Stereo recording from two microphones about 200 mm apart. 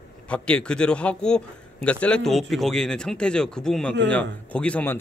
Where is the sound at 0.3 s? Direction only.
5° left (ahead or behind).